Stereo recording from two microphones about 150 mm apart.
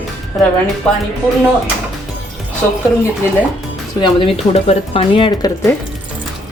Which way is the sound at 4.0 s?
35° left (ahead or behind).